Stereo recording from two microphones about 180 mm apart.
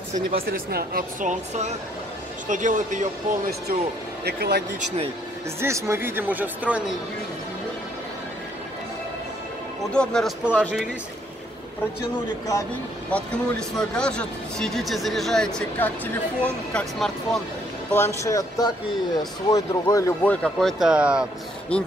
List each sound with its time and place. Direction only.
0.3 s speech: 60° right (ahead or behind)
4.2 s speech: 65° right (ahead or behind)
4.7 s speech: 35° right (ahead or behind)
5.6 s speech: 15° right (ahead or behind)
9.9 s speech: centre (ahead or behind)
13.1 s speech: 5° left (ahead or behind)
17.9 s speech: 15° left (ahead or behind); by 21.3 s 5° right (ahead or behind)